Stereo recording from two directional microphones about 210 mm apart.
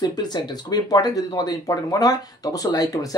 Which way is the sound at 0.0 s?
20° left (ahead or behind).